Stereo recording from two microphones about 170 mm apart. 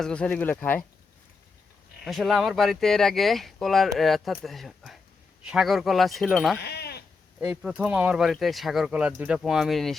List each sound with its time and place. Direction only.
0.0 s speech: 5° left (ahead or behind)
2.0 s speech: centre (ahead or behind)
6.6 s sheep: 70° left (ahead or behind)
7.3 s speech: 10° right (ahead or behind)